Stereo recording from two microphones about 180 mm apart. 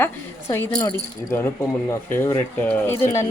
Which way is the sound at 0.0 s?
15° left (ahead or behind).